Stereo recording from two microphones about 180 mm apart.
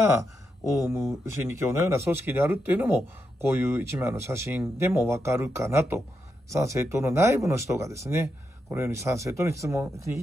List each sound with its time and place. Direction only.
0.7 s speech: 15° right (ahead or behind)